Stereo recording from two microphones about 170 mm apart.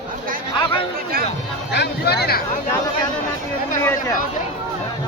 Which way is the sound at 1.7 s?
80° left.